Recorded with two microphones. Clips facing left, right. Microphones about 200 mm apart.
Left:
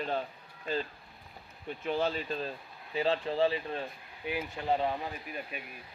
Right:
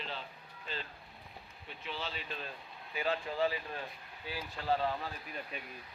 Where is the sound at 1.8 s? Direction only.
50° left (ahead or behind); by 5.1 s 20° left (ahead or behind).